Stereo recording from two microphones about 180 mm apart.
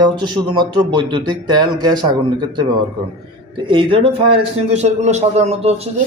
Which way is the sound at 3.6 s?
25° right (ahead or behind).